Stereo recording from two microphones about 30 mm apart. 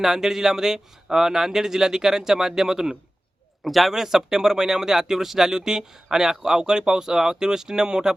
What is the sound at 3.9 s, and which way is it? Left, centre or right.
Speech, centre.